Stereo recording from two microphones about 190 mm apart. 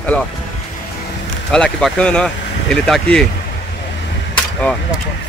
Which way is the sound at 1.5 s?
5° left (ahead or behind).